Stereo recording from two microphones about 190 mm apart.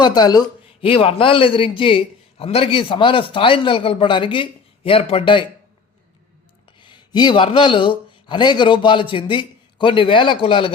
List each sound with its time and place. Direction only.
0.0 s a man's voice: 20° left (ahead or behind)
6.7 s speech: 25° left (ahead or behind)